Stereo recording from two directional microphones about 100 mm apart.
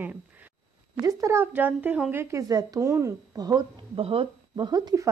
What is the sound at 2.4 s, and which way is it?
Speech, 35° right (ahead or behind).